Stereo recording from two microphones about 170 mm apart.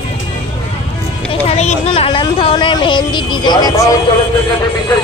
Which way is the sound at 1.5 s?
40° left (ahead or behind).